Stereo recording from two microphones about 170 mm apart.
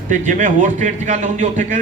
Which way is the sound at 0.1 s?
50° right (ahead or behind).